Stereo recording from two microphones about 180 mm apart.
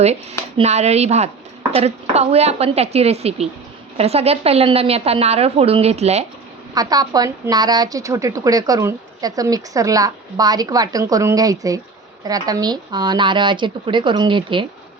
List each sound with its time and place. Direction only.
0.0 s a woman's voice: 35° right (ahead or behind)
6.7 s a woman's voice: 20° right (ahead or behind)